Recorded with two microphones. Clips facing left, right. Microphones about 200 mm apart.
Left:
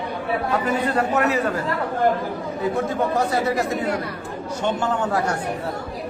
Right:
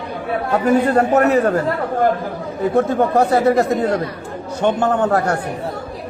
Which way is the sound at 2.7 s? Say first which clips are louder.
Right 8 dB; 55° right (ahead or behind).